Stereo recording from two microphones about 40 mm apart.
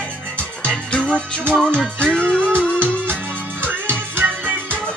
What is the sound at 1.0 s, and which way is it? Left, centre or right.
Music, left.